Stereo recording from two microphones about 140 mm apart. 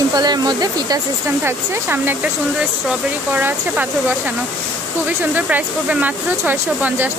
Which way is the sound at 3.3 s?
15° right (ahead or behind).